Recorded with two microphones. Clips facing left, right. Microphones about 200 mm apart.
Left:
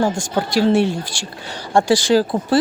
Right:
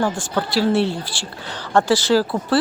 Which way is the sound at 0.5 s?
15° left (ahead or behind).